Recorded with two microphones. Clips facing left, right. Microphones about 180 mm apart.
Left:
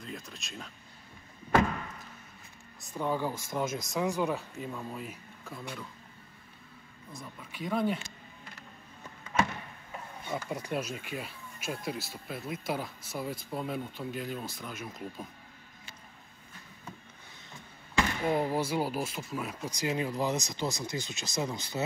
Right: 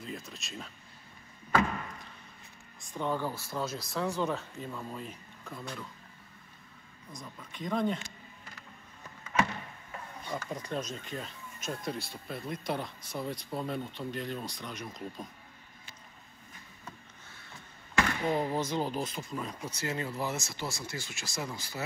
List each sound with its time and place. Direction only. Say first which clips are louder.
0.0 s speech: right 1 dB; centre (ahead or behind)
2.9 s speech: left 1 dB; 10° left (ahead or behind)
7.1 s speech: left 1 dB; 5° left (ahead or behind)
10.3 s speech: left 2 dB; 10° left (ahead or behind)
17.9 s speech: left 1 dB; 10° left (ahead or behind)